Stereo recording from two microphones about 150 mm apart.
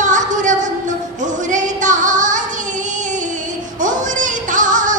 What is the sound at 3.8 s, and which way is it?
Music, 60° right (ahead or behind).